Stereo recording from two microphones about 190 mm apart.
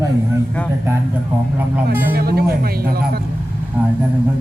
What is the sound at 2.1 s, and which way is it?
Speech, 55° right (ahead or behind).